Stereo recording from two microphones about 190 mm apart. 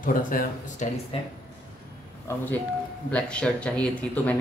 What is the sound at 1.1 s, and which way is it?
Speech, 30° left (ahead or behind).